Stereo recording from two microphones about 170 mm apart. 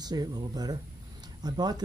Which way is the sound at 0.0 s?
25° right (ahead or behind).